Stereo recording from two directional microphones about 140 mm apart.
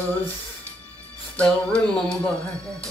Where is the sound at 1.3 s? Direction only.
10° left (ahead or behind).